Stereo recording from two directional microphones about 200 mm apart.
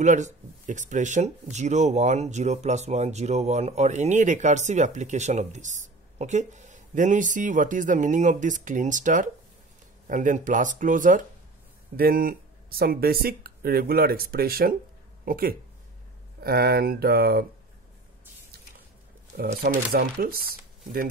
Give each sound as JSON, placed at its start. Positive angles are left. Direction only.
{"t": 0.0, "sound": "speech", "side_deg": -40}
{"t": 19.3, "sound": "speech", "side_deg": -50}